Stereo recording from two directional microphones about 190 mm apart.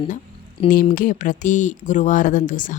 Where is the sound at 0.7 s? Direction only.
45° left (ahead or behind).